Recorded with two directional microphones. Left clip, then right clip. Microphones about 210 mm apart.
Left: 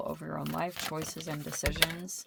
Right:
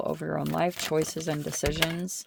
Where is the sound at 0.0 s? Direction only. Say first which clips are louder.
Right 7 dB; 50° right (ahead or behind).